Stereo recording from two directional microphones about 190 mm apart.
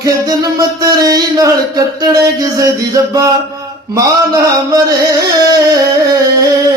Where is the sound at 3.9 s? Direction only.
20° right (ahead or behind).